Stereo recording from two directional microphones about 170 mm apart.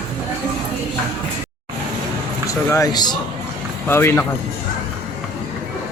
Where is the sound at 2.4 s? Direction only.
20° left (ahead or behind).